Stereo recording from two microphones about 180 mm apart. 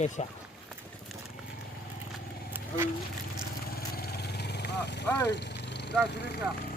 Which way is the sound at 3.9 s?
60° left (ahead or behind).